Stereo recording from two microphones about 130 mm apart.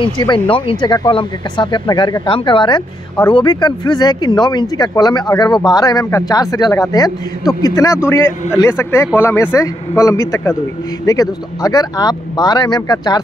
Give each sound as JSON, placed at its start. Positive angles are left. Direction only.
{"t": 0.0, "sound": "speech", "side_deg": 40}